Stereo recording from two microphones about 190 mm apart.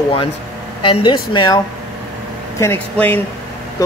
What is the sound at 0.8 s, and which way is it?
Speech, 25° left (ahead or behind).